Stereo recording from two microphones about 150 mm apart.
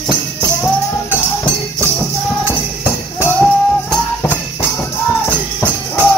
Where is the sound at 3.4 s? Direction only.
10° left (ahead or behind).